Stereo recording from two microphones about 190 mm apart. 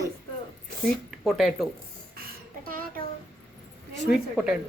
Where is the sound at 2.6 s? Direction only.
50° right (ahead or behind).